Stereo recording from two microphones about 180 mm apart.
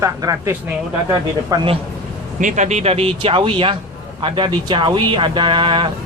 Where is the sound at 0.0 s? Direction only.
15° right (ahead or behind).